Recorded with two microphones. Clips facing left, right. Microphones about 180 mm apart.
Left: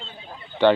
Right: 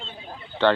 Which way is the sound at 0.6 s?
10° left (ahead or behind).